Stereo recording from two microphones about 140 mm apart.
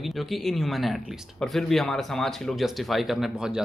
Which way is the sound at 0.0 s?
Centre (ahead or behind).